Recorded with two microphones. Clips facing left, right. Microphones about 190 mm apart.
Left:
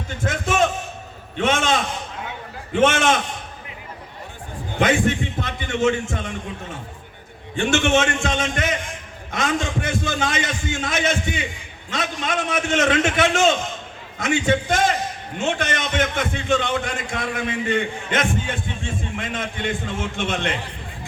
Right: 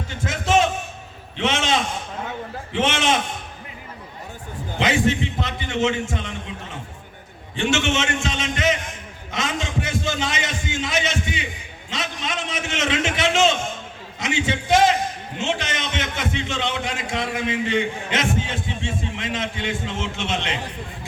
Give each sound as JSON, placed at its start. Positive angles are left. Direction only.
{"t": 0.3, "sound": "a sound", "side_deg": 55}
{"t": 1.4, "sound": "a man's voice", "side_deg": 50}
{"t": 4.8, "sound": "a man's voice", "side_deg": 55}
{"t": 7.5, "sound": "a man's voice", "side_deg": 50}